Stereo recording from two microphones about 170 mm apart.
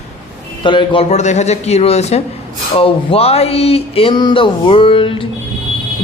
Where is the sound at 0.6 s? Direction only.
30° left (ahead or behind).